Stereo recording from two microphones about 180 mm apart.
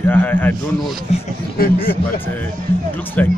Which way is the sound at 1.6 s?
55° left (ahead or behind).